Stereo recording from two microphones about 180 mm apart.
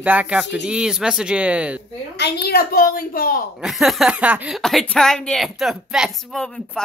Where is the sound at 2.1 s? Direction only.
65° left (ahead or behind).